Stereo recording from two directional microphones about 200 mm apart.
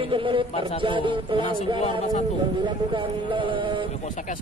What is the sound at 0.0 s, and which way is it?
A man's voice, 25° right (ahead or behind).